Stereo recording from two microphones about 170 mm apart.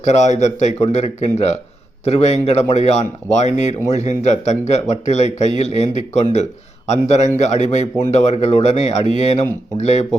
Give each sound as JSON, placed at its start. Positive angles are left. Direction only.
{"t": 0.0, "sound": "a man's voice", "side_deg": 40}